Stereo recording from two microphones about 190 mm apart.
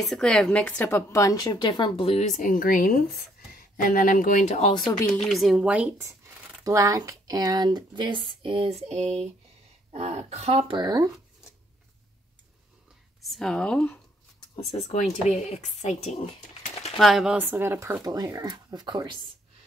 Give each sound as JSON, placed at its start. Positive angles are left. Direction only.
{"t": 0.0, "sound": "a woman's voice", "side_deg": 5}
{"t": 5.2, "sound": "speech", "side_deg": 0}
{"t": 10.7, "sound": "speech", "side_deg": -20}
{"t": 13.2, "sound": "speech", "side_deg": 0}
{"t": 14.5, "sound": "speech", "side_deg": 30}
{"t": 16.9, "sound": "speech", "side_deg": 0}